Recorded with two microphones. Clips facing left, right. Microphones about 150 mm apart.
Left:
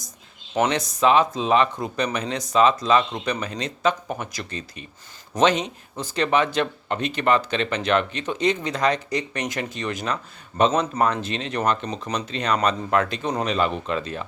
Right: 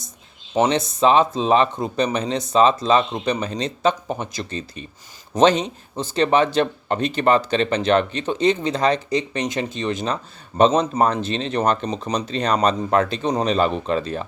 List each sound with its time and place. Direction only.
0.6 s speech: 25° right (ahead or behind)